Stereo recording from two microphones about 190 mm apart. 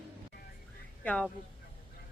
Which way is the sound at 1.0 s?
5° left (ahead or behind).